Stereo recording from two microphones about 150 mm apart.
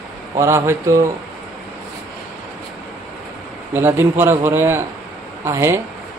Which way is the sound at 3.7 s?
15° right (ahead or behind).